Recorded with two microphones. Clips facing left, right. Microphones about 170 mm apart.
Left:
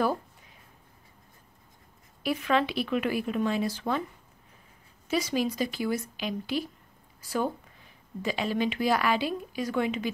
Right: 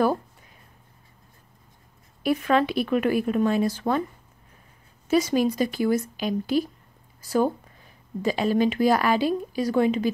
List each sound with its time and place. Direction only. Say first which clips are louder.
2.2 s speech: right 5 dB; 45° right (ahead or behind)
5.0 s speech: right 7 dB; 45° right (ahead or behind)